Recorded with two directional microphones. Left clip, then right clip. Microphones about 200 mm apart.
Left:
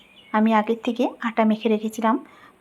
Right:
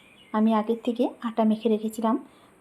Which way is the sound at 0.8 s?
35° left (ahead or behind).